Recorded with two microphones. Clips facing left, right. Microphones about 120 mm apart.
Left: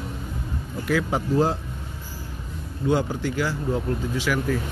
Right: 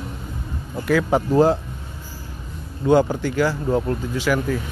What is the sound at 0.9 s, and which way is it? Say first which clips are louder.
Speech: right 5 dB; 60° right (ahead or behind).